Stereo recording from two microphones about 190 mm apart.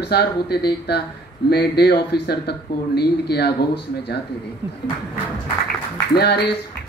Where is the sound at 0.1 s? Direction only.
60° left (ahead or behind).